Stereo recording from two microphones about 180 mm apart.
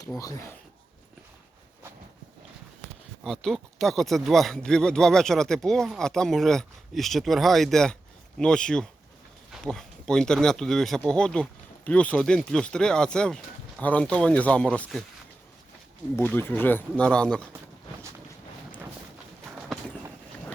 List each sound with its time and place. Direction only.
0.2 s speech: 15° left (ahead or behind)
3.2 s speech: 5° left (ahead or behind)
16.1 s speech: 10° left (ahead or behind)